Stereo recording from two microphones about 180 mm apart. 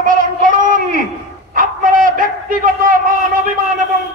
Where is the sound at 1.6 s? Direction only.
50° right (ahead or behind).